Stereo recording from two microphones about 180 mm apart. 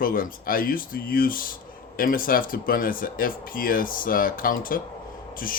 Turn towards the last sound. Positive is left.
turn(degrees=50)  # may be behind; listen again after turning